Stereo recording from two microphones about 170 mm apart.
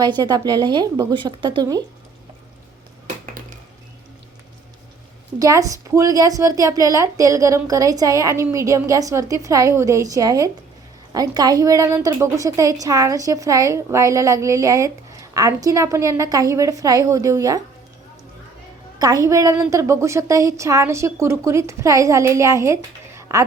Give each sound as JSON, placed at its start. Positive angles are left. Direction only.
{"t": 0.2, "sound": "a woman's voice", "side_deg": -25}
{"t": 3.4, "sound": "dishes", "side_deg": -55}
{"t": 5.4, "sound": "a woman's voice", "side_deg": -20}
{"t": 18.9, "sound": "a woman's voice", "side_deg": -20}